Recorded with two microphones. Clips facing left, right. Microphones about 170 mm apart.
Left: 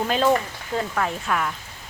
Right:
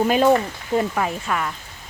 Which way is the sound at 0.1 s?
15° right (ahead or behind).